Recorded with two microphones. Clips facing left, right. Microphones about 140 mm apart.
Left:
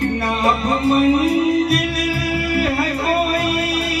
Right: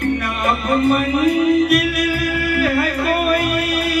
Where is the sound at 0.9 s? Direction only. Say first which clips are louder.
Left 2 dB; 30° left (ahead or behind).